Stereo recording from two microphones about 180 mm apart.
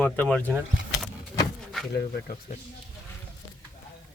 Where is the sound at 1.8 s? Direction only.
Centre (ahead or behind).